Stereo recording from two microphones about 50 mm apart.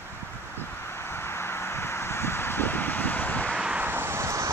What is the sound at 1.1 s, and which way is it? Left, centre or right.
Vehicle, left.